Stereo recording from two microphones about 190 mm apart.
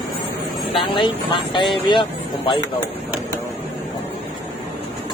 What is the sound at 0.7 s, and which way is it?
Speech, 25° left (ahead or behind).